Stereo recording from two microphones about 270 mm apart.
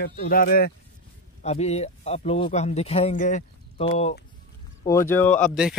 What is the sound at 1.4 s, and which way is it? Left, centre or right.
Speech, left.